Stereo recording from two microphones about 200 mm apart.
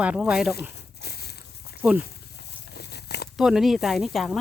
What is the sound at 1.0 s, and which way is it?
Walk, 55° left (ahead or behind).